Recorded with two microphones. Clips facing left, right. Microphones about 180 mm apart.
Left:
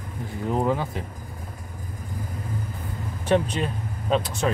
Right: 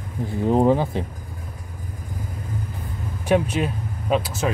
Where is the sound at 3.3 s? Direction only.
10° right (ahead or behind).